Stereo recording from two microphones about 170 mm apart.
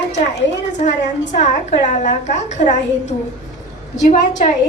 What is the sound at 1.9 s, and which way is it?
A woman's voice, 45° left (ahead or behind).